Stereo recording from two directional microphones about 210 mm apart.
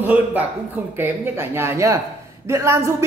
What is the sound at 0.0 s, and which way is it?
A woman's voice, 10° right (ahead or behind).